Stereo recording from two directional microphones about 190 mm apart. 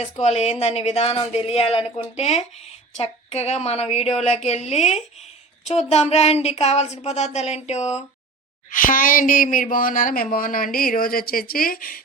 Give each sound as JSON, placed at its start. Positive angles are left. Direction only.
{"t": 0.0, "sound": "speech", "side_deg": 35}